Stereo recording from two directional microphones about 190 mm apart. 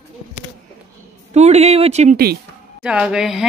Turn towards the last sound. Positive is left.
turn(degrees=0)  # may be behind; listen again after turning